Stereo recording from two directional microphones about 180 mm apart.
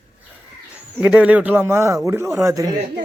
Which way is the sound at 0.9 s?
5° right (ahead or behind).